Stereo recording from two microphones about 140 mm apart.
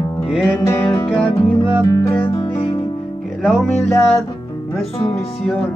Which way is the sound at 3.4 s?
Centre (ahead or behind).